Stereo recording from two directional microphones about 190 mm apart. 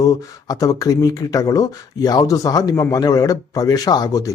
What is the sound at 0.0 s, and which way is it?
Speech, 20° left (ahead or behind).